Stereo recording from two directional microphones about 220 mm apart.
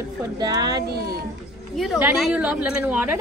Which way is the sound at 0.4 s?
15° right (ahead or behind).